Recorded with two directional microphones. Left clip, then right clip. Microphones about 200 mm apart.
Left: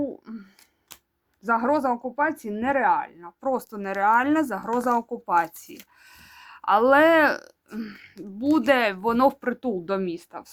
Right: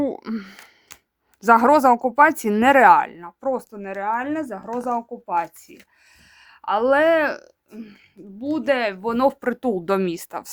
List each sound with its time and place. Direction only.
0.0 s speech: 45° right (ahead or behind)
3.4 s speech: 5° right (ahead or behind)
3.8 s speech: 10° left (ahead or behind); by 10.5 s 30° right (ahead or behind)